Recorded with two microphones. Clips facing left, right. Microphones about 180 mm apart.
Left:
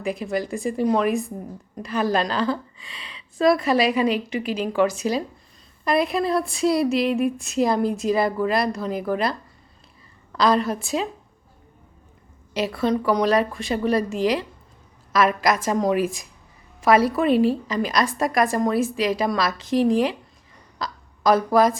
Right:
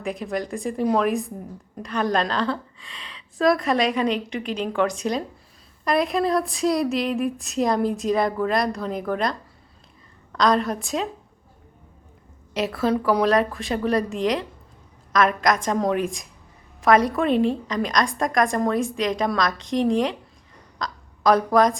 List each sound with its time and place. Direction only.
0.0 s speech: centre (ahead or behind)
10.3 s speech: 5° left (ahead or behind)
12.5 s a woman's voice: centre (ahead or behind)